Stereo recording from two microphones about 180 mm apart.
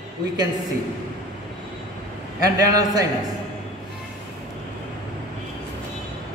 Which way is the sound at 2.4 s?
20° right (ahead or behind).